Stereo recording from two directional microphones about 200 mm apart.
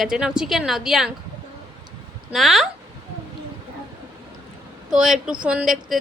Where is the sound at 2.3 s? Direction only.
Centre (ahead or behind).